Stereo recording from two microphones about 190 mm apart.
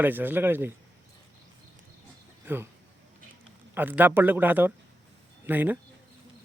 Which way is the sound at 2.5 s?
10° right (ahead or behind).